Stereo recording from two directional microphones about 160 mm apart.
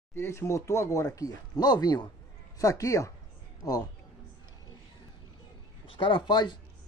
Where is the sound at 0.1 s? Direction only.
15° left (ahead or behind).